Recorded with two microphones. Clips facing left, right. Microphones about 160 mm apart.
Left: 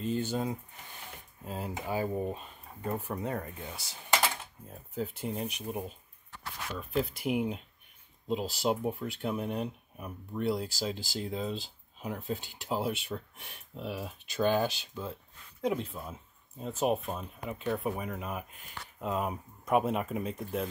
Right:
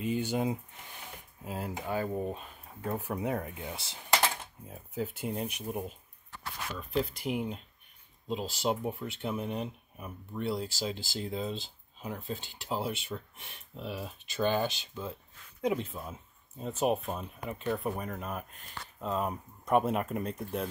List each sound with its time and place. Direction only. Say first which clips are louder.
0.0 s speech: right 1 dB; 10° right (ahead or behind)
1.4 s speech: even; 5° right (ahead or behind)
3.7 s speech: right 2 dB; 25° right (ahead or behind)
4.6 s speech: even; 5° right (ahead or behind)